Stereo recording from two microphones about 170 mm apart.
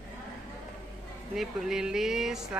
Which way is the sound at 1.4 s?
5° right (ahead or behind).